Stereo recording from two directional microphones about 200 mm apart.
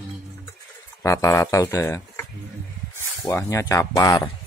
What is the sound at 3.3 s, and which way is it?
Speech, 15° left (ahead or behind).